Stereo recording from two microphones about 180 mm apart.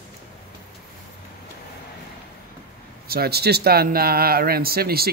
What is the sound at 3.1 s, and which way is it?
Speech, 60° right (ahead or behind).